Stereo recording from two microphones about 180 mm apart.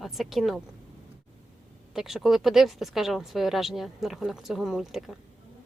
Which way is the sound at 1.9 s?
Centre (ahead or behind).